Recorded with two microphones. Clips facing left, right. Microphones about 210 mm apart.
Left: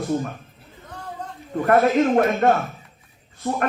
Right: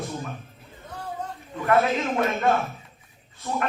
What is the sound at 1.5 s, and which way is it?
Speech, 50° left (ahead or behind).